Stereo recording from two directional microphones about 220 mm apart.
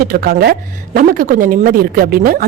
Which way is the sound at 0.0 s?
40° right (ahead or behind).